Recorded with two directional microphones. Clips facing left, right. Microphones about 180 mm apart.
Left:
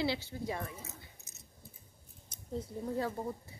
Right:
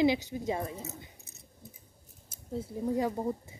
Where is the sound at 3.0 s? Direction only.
20° right (ahead or behind).